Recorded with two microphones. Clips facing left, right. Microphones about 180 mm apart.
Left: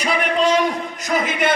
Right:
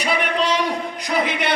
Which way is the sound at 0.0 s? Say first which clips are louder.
Left 3 dB; 45° left (ahead or behind).